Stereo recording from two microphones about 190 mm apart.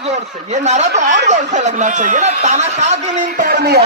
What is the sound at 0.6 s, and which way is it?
A man's voice, 35° right (ahead or behind).